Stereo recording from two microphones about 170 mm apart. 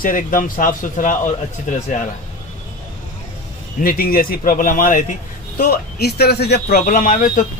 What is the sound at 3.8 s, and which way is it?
Speech, 60° left (ahead or behind).